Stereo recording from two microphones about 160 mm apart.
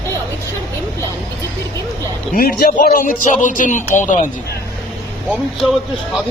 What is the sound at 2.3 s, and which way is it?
A man's voice, 65° left (ahead or behind).